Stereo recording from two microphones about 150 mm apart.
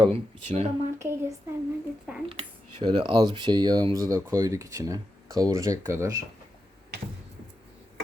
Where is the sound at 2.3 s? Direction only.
35° right (ahead or behind); by 6.1 s 20° right (ahead or behind).